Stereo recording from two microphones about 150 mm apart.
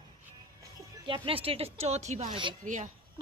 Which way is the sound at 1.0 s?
35° right (ahead or behind).